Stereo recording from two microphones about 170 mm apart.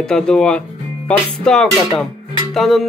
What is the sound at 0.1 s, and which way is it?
Speech, 5° left (ahead or behind).